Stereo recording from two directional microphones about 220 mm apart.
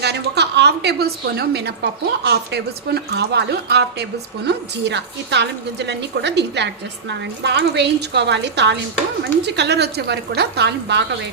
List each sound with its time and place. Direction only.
0.0 s a woman's voice: 50° right (ahead or behind)